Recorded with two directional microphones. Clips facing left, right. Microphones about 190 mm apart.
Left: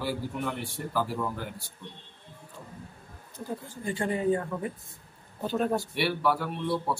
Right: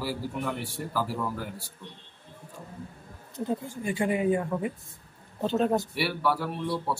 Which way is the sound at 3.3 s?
15° right (ahead or behind).